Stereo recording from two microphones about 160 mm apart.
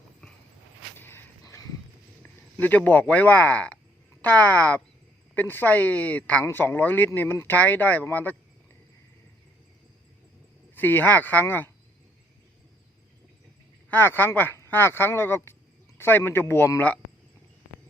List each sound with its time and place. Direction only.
0.9 s a sound: 15° left (ahead or behind)
2.2 s speech: 10° left (ahead or behind)
10.8 s speech: 10° left (ahead or behind)
13.9 s speech: 10° left (ahead or behind)